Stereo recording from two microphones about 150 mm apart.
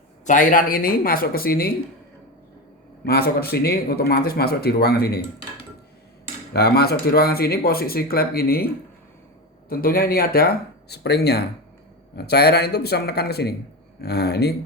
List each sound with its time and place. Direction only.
0.3 s speech: 65° left (ahead or behind); by 1.7 s 90° left
3.1 s a man's voice: 90° left
6.5 s a man's voice: 90° left
9.6 s a man's voice: 85° left